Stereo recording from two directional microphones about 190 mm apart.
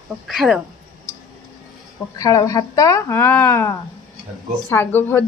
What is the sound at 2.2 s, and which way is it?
Speech, 20° left (ahead or behind).